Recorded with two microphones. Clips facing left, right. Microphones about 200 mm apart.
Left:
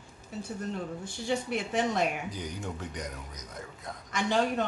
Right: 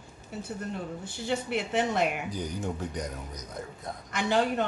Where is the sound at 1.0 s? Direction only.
5° right (ahead or behind).